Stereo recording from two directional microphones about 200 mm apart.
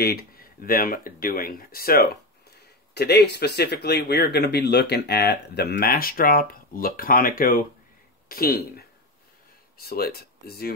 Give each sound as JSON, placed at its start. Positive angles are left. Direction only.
{"t": 0.0, "sound": "speech", "side_deg": 50}